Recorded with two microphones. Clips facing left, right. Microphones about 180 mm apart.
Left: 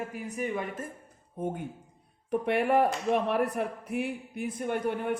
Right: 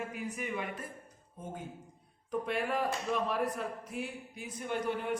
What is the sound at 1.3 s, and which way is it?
A man's voice, 60° left (ahead or behind).